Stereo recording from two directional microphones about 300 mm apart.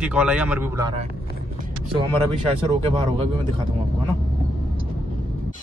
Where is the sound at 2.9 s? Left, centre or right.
Centre.